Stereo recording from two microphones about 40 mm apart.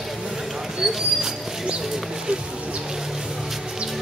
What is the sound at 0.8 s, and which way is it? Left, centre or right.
Horse, centre.